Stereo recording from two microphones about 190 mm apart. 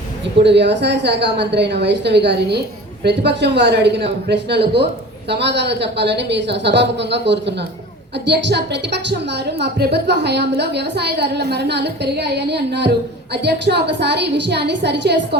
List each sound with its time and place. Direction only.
0.4 s a woman's voice: 65° right (ahead or behind)